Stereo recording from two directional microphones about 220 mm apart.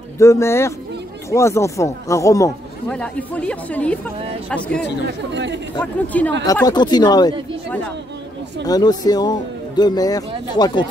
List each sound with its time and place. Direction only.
0.2 s speech: 10° left (ahead or behind)
5.3 s speech: 55° right (ahead or behind)
5.8 s speech: 5° left (ahead or behind)
6.4 s speech: 15° left (ahead or behind)
8.6 s speech: 15° left (ahead or behind)